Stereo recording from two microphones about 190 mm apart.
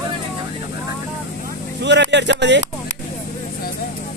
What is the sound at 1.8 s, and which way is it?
Speech, 70° right (ahead or behind).